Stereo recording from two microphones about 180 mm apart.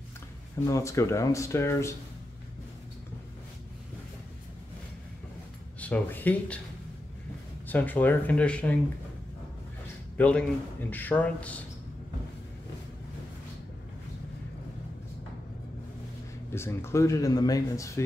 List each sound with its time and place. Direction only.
0.7 s speech: 15° left (ahead or behind)
5.8 s speech: 10° left (ahead or behind)
7.6 s speech: 10° left (ahead or behind)
10.1 s a man's voice: 5° left (ahead or behind)
16.5 s speech: 15° left (ahead or behind)